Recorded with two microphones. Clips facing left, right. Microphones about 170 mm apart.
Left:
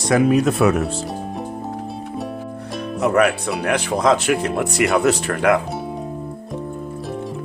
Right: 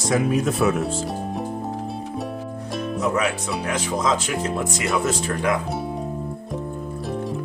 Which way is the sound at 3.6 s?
65° left (ahead or behind).